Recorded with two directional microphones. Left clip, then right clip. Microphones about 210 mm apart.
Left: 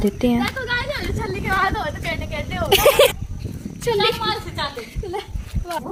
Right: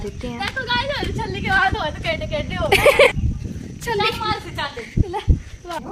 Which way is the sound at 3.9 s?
5° right (ahead or behind).